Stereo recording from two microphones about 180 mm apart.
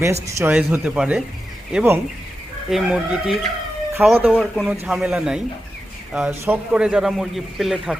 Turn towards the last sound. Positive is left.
turn(degrees=0)  # may be behind; listen again after turning